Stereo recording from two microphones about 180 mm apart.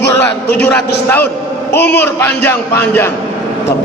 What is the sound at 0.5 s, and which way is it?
A man's voice, 10° left (ahead or behind).